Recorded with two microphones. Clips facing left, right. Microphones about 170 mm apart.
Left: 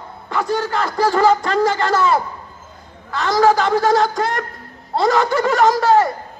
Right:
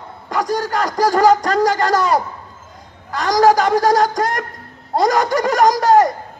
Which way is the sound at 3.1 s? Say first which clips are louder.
Right 1 dB; 40° right (ahead or behind).